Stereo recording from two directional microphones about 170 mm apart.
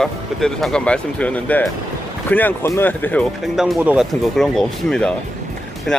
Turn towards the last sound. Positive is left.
turn(degrees=5)  # may be behind; listen again after turning